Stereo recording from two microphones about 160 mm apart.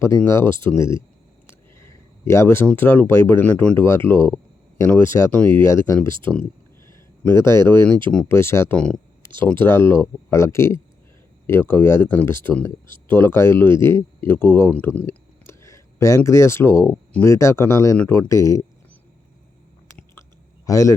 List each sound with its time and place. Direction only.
0.3 s speech: 15° left (ahead or behind)
6.3 s a sound: 15° left (ahead or behind)
7.3 s speech: 25° right (ahead or behind)
8.1 s speech: 10° left (ahead or behind)
9.2 s speech: 30° right (ahead or behind)
9.5 s speech: 15° left (ahead or behind)
17.2 s speech: 15° left (ahead or behind)
20.7 s speech: 20° left (ahead or behind)